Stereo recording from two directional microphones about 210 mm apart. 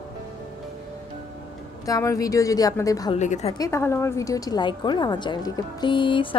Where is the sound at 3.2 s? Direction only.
35° left (ahead or behind).